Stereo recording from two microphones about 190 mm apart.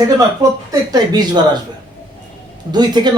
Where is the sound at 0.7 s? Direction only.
20° right (ahead or behind).